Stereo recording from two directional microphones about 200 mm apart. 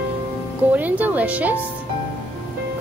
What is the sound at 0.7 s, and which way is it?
Speech, 10° right (ahead or behind).